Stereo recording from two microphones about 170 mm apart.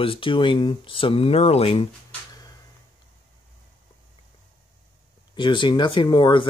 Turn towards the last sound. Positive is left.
turn(degrees=30)  # may be behind; listen again after turning